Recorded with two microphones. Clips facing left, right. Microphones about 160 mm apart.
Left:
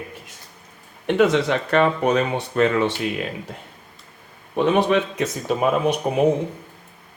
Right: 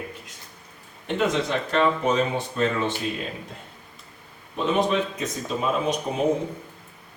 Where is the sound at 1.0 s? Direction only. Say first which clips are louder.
Left 6 dB; 70° left (ahead or behind).